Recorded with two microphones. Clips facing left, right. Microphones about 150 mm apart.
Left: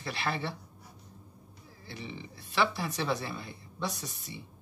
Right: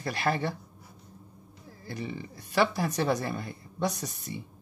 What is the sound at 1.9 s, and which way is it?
Speech, 45° right (ahead or behind).